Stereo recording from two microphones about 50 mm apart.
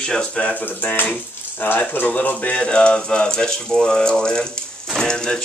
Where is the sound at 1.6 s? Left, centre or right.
Left.